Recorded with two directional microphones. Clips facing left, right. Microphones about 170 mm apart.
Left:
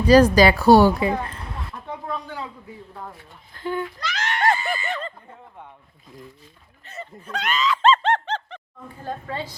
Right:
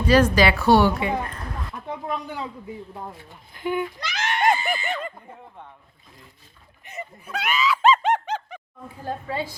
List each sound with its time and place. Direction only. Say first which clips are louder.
0.1 s a woman's voice: left 4 dB; 40° left (ahead or behind)
2.0 s a man's voice: right 1 dB; 20° right (ahead or behind)
6.8 s a sound: even; 15° right (ahead or behind)
9.0 s a woman's voice: right 2 dB; 10° right (ahead or behind)